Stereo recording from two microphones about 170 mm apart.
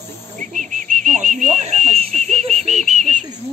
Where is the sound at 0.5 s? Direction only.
50° right (ahead or behind).